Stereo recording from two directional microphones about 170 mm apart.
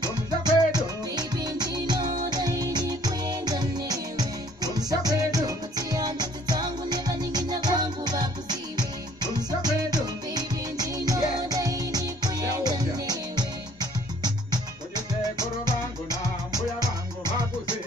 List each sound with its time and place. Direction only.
0.0 s music: 25° right (ahead or behind)